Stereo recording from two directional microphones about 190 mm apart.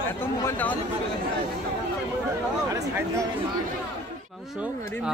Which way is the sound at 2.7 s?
15° right (ahead or behind).